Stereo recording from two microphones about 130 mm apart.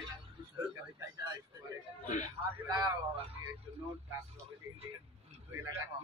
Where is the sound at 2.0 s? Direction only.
90° left.